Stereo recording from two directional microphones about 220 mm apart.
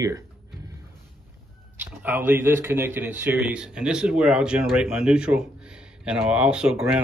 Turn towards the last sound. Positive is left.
turn(degrees=-5)  # may be behind; listen again after turning